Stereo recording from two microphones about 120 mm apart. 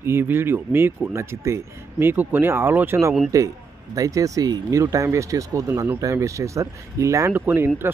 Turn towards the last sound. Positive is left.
turn(degrees=-15)  # may be behind; listen again after turning